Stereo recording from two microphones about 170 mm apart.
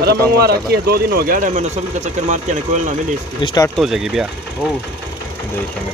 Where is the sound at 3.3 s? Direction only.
30° left (ahead or behind).